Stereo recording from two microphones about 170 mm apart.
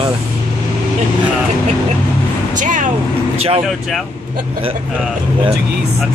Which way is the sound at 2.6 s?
50° right (ahead or behind).